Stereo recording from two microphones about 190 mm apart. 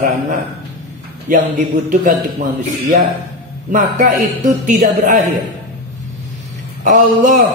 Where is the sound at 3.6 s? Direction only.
45° right (ahead or behind).